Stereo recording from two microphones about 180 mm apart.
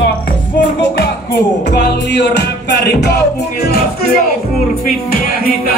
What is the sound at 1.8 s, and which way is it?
Music, 70° left (ahead or behind).